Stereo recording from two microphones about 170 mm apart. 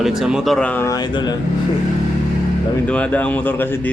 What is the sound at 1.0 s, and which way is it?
Speech, 25° left (ahead or behind).